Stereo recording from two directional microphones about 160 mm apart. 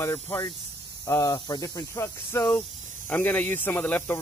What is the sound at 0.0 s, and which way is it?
Speech, 15° left (ahead or behind).